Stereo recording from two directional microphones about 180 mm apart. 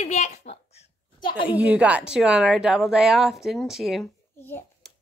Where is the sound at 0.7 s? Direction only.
25° left (ahead or behind).